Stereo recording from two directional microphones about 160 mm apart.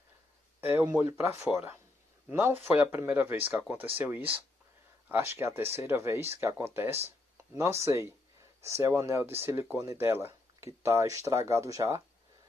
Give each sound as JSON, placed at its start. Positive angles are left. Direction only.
{"t": 0.6, "sound": "speech", "side_deg": -15}